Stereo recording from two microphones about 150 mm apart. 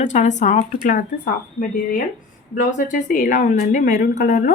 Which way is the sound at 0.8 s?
70° left (ahead or behind).